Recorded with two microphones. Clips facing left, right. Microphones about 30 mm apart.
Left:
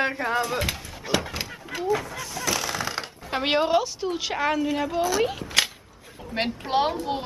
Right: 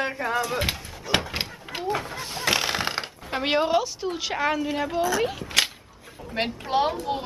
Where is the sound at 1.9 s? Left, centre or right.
Right.